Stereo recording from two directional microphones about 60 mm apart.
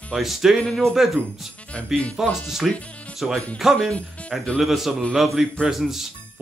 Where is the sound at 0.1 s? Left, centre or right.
Centre.